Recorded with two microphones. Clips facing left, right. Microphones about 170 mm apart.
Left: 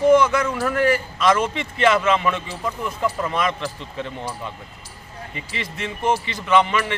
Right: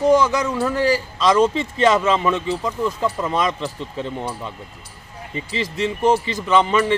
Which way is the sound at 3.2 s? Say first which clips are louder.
Right 2 dB; 25° right (ahead or behind).